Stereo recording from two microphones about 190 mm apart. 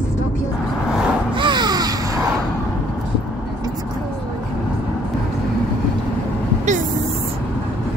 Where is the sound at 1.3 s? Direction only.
25° right (ahead or behind).